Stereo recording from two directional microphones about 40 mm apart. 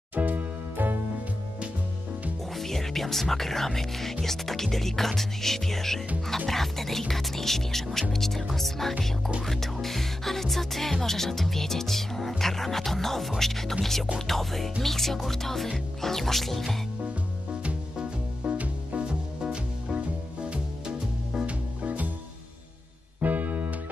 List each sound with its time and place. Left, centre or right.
0.1 s music: right
2.5 s speech: centre
14.1 s music: centre
17.0 s music: right
19.0 s music: right
21.5 s music: right
23.2 s music: right